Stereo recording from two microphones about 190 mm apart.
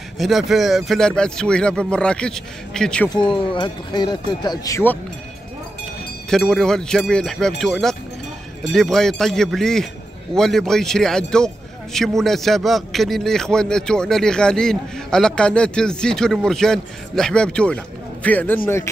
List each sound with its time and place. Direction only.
0.2 s speech: centre (ahead or behind)
3.1 s speech: 25° left (ahead or behind)
6.3 s a man's voice: centre (ahead or behind)